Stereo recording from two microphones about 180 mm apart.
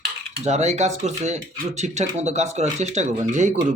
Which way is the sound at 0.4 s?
40° right (ahead or behind).